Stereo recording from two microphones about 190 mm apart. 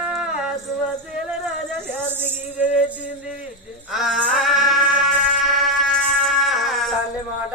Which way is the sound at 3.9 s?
Centre (ahead or behind).